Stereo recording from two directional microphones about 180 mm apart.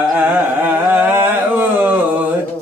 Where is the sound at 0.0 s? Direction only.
5° right (ahead or behind).